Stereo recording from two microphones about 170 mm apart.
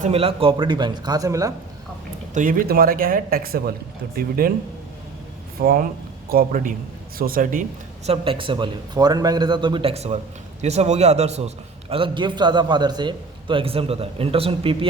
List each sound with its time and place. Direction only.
0.0 s a man's voice: 35° right (ahead or behind); by 1.5 s 20° right (ahead or behind)
2.3 s speech: 55° right (ahead or behind)
5.5 s speech: 60° right (ahead or behind)
8.0 s a man's voice: 35° right (ahead or behind)